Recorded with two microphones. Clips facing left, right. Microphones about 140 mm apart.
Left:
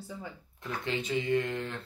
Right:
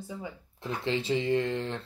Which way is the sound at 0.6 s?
30° right (ahead or behind).